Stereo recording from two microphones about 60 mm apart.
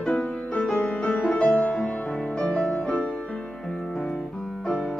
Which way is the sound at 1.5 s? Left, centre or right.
Centre.